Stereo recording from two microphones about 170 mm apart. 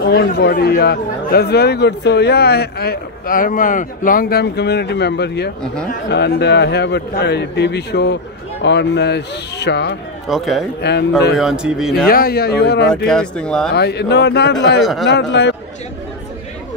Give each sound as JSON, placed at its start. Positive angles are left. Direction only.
{"t": 0.0, "sound": "a man's voice", "side_deg": 70}
{"t": 8.6, "sound": "speech", "side_deg": 90}
{"t": 10.2, "sound": "speech", "side_deg": 0}
{"t": 10.8, "sound": "a man's voice", "side_deg": 80}
{"t": 11.3, "sound": "speech", "side_deg": -5}
{"t": 12.1, "sound": "speech", "side_deg": 60}
{"t": 12.8, "sound": "speech", "side_deg": 5}
{"t": 13.7, "sound": "a man's voice", "side_deg": 75}
{"t": 14.8, "sound": "speech", "side_deg": 0}
{"t": 15.0, "sound": "speech", "side_deg": 90}